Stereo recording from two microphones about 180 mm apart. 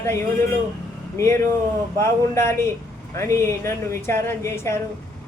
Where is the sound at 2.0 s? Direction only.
15° left (ahead or behind).